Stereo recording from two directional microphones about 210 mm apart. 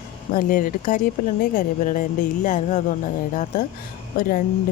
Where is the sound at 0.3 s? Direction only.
40° left (ahead or behind).